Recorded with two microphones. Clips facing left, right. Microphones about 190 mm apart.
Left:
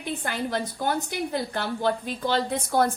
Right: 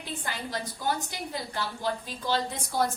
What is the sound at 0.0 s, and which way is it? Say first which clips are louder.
A woman's voice: left 7 dB; 60° left (ahead or behind).